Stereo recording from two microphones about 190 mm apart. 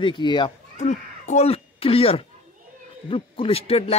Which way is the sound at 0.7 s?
35° left (ahead or behind).